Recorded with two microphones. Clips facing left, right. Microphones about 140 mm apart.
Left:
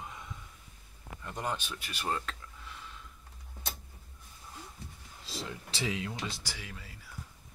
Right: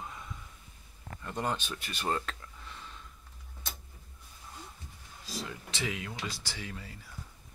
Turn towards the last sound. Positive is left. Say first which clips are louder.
# right 3 dB
turn(degrees=5)  # may be behind; listen again after turning